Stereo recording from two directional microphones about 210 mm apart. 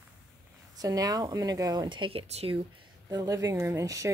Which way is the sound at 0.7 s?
15° right (ahead or behind).